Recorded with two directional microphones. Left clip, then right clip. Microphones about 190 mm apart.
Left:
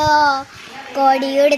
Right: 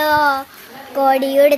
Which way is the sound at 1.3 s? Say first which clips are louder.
Right 2 dB; 25° right (ahead or behind).